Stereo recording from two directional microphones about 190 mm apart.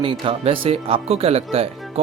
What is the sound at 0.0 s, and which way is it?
Speech, 30° right (ahead or behind).